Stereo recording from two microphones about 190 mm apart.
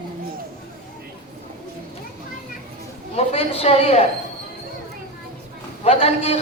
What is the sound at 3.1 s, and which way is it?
Speech, 30° left (ahead or behind).